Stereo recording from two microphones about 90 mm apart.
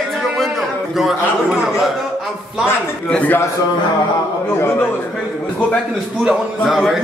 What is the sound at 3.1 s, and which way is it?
Speech, 20° left (ahead or behind).